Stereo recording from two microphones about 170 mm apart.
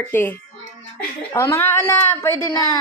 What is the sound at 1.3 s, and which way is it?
Speech, 15° left (ahead or behind).